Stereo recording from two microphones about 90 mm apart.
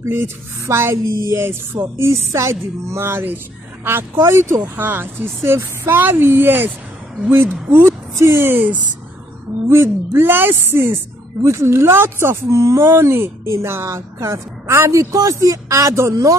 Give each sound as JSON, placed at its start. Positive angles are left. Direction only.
{"t": 0.0, "sound": "a woman's voice", "side_deg": -30}